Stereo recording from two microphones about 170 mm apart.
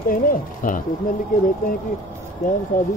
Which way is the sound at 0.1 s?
55° left (ahead or behind).